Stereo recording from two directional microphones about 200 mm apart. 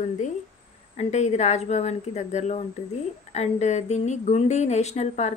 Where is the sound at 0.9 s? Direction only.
35° left (ahead or behind).